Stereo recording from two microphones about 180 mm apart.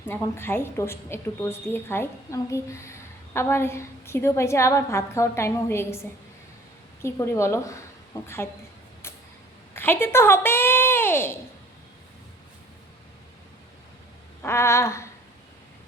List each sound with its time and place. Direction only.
0.1 s a woman's voice: 15° left (ahead or behind)
9.7 s speech: 10° left (ahead or behind)
14.4 s a woman's voice: 15° left (ahead or behind)